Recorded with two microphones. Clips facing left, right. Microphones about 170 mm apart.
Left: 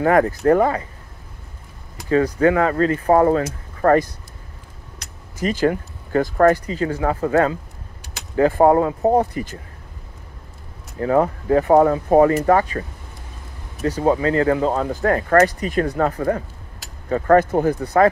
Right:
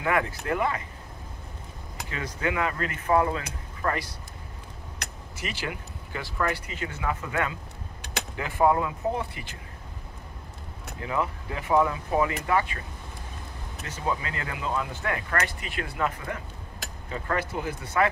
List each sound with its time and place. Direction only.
0.0 s speech: 40° left (ahead or behind)
2.0 s speech: 35° left (ahead or behind)
5.4 s speech: 45° left (ahead or behind)
11.0 s speech: 45° left (ahead or behind)
13.8 s speech: 35° left (ahead or behind)